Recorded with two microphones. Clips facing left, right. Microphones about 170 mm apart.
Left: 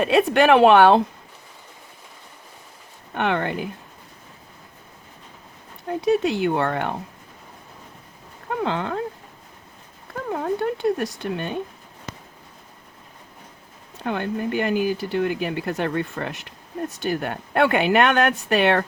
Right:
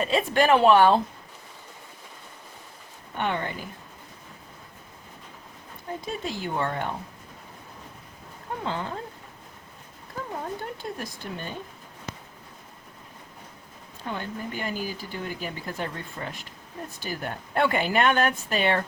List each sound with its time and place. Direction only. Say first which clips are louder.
0.0 s speech: left 6 dB; 65° left (ahead or behind)
3.2 s speech: left 6 dB; 70° left (ahead or behind)
6.0 s speech: left 14 dB; 70° left (ahead or behind)
8.6 s speech: left 7 dB; 70° left (ahead or behind)
10.2 s speech: left 11 dB; 65° left (ahead or behind)
14.0 s speech: left 8 dB; 65° left (ahead or behind)